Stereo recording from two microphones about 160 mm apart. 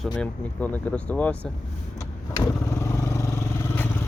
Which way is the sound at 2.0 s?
20° left (ahead or behind).